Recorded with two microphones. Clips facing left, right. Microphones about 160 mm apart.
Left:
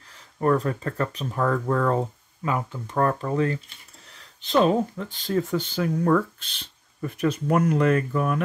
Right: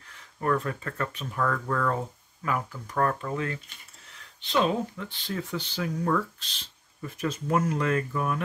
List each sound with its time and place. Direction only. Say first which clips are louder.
0.4 s speech: left 5 dB; 35° left (ahead or behind); by 8.4 s 55° left (ahead or behind)